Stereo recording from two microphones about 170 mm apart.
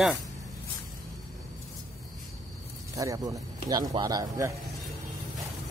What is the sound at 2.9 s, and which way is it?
Speech, 20° right (ahead or behind).